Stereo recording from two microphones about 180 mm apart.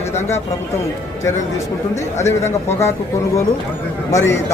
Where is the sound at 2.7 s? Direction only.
15° left (ahead or behind).